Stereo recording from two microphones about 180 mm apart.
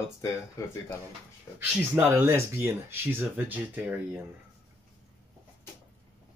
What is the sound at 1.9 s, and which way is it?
Speech, 15° right (ahead or behind).